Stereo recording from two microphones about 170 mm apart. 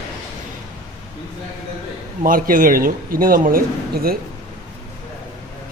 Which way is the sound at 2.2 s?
55° right (ahead or behind).